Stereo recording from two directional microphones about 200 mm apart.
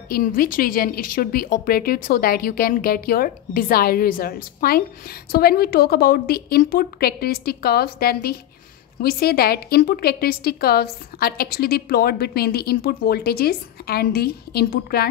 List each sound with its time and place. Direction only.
0.1 s a woman's voice: 45° left (ahead or behind)